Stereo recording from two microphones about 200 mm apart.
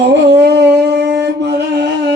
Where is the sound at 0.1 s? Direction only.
55° right (ahead or behind).